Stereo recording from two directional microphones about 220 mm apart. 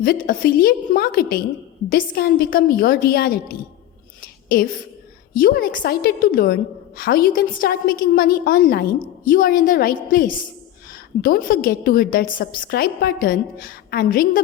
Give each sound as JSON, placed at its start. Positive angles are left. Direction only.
{"t": 0.0, "sound": "a woman's voice", "side_deg": 40}